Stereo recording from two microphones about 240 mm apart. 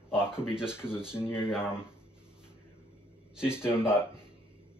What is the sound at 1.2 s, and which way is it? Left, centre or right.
Speech, centre.